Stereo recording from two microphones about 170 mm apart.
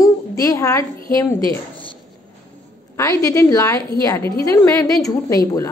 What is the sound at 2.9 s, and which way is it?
A woman's voice, 20° left (ahead or behind).